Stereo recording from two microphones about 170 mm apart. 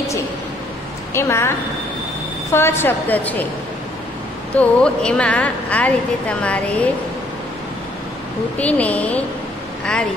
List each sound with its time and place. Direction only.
1.1 s a woman's voice: 15° left (ahead or behind)
2.5 s a woman's voice: 15° left (ahead or behind)
4.6 s a woman's voice: 5° left (ahead or behind)
8.5 s a woman's voice: 10° left (ahead or behind)